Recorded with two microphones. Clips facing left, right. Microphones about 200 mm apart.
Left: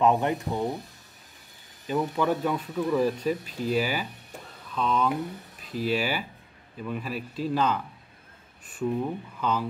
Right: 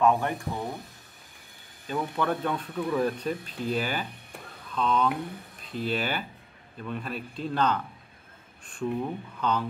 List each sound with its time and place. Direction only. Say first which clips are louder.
0.0 s speech: left 1 dB; 20° left (ahead or behind)
1.9 s speech: left 3 dB; 10° left (ahead or behind)